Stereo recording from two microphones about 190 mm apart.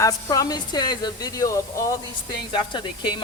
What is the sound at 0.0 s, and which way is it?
A woman's voice, 20° left (ahead or behind).